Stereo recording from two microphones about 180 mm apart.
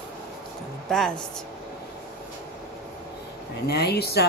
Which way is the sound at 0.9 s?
Centre (ahead or behind).